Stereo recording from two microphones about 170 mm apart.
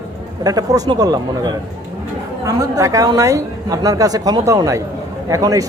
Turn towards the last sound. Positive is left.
turn(degrees=-20)  # may be behind; listen again after turning